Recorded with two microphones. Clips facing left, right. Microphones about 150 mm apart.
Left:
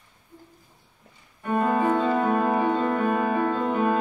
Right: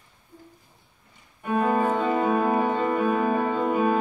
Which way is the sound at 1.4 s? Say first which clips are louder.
Even; 5° right (ahead or behind).